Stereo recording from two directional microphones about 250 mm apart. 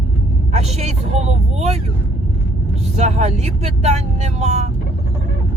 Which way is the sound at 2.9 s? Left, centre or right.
Right.